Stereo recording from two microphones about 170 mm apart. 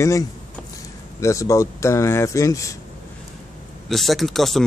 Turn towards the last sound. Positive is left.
turn(degrees=0)  # may be behind; listen again after turning